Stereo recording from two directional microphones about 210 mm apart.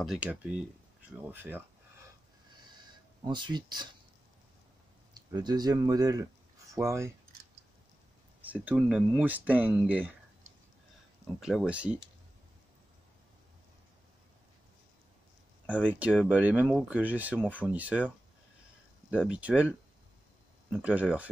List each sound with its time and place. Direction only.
0.0 s speech: 5° right (ahead or behind)
3.3 s speech: 20° right (ahead or behind)
5.1 s speech: 20° right (ahead or behind)
8.5 s speech: 5° right (ahead or behind)
11.3 s speech: centre (ahead or behind)
16.0 s speech: 5° right (ahead or behind)
19.0 s speech: 5° right (ahead or behind)
20.7 s speech: 5° right (ahead or behind)